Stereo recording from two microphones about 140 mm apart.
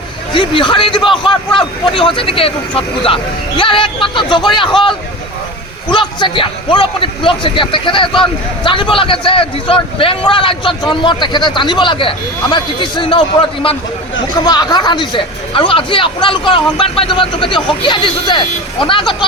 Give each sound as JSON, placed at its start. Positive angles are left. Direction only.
{"t": 0.3, "sound": "a man's voice", "side_deg": 35}